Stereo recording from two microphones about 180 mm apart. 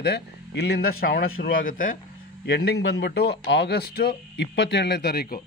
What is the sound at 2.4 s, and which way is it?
A man's voice, 65° left (ahead or behind).